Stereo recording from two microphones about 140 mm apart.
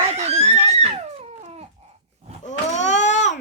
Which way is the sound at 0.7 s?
45° right (ahead or behind).